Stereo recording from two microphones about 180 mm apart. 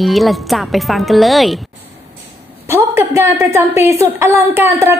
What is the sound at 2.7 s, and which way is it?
A woman's voice, 15° right (ahead or behind).